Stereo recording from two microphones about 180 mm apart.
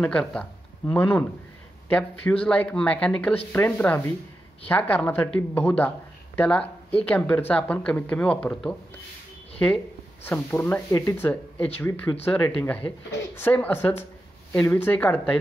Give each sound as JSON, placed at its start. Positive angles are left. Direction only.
{"t": 0.0, "sound": "speech", "side_deg": 5}
{"t": 6.6, "sound": "speech", "side_deg": 30}
{"t": 7.1, "sound": "speech", "side_deg": 10}
{"t": 10.2, "sound": "speech", "side_deg": 10}